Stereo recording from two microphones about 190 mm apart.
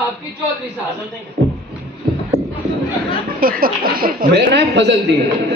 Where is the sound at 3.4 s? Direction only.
50° right (ahead or behind).